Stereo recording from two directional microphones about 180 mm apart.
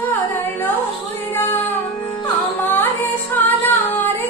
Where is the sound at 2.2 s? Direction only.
10° left (ahead or behind).